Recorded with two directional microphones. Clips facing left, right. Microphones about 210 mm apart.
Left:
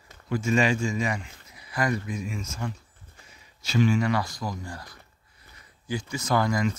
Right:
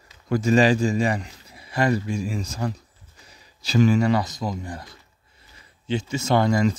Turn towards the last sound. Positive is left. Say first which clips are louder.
# right 5 dB
turn(degrees=-30)  # may be behind; listen again after turning